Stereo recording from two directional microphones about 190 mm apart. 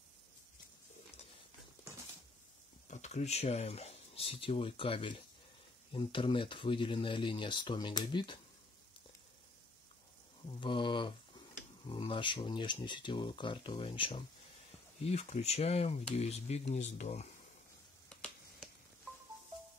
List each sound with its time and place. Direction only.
2.9 s speech: 35° left (ahead or behind)
10.6 s speech: 25° left (ahead or behind)